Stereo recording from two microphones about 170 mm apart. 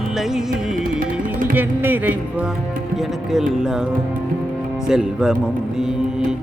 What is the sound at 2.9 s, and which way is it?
Music, centre (ahead or behind).